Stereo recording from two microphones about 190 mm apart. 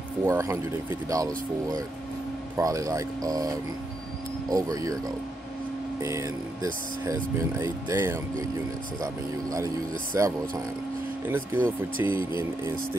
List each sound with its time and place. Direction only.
0.2 s speech: 15° right (ahead or behind)